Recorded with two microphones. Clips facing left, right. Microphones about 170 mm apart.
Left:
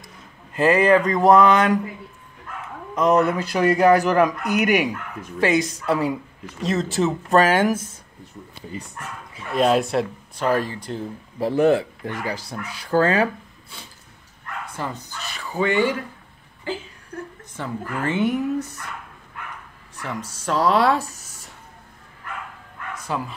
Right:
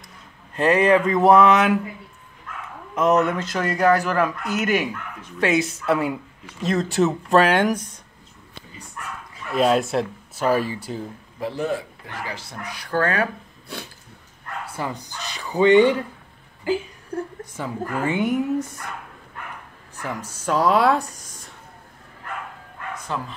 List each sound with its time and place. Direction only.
0.6 s speech: centre (ahead or behind)
2.9 s speech: centre (ahead or behind)
3.3 s speech: 15° left (ahead or behind)
5.4 s speech: 5° right (ahead or behind)
9.5 s speech: centre (ahead or behind)
11.5 s speech: 60° left (ahead or behind)
12.3 s speech: 35° left (ahead or behind)
12.9 s speech: 25° left (ahead or behind)
14.7 s speech: 10° right (ahead or behind)
17.1 s a sound: 30° right (ahead or behind)
17.6 s speech: 10° right (ahead or behind)
20.0 s speech: 5° right (ahead or behind)
23.1 s speech: 10° left (ahead or behind)